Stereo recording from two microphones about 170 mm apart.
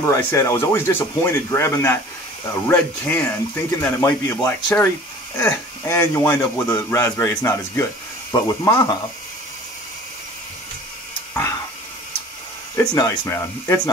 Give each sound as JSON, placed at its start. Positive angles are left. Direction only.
{"t": 0.1, "sound": "a man's voice", "side_deg": 15}
{"t": 12.7, "sound": "a man's voice", "side_deg": 20}